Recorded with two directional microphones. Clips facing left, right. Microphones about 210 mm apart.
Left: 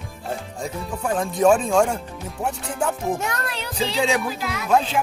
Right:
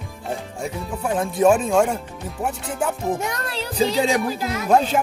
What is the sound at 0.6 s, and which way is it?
Speech, 5° right (ahead or behind).